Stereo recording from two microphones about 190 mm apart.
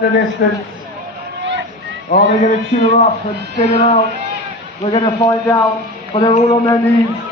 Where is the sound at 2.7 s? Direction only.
35° left (ahead or behind).